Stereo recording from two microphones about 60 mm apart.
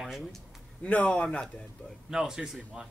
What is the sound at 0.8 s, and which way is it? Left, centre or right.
Speech, left.